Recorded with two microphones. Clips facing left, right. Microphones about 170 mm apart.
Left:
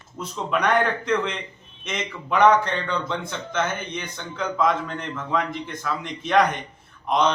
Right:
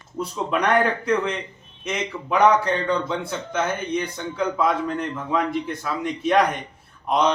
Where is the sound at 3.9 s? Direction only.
35° right (ahead or behind).